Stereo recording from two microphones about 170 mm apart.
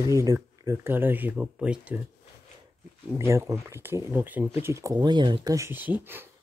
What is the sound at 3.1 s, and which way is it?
Speech, 15° right (ahead or behind).